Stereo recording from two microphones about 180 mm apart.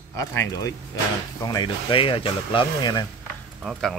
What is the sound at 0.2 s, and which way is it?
Speech, 15° left (ahead or behind).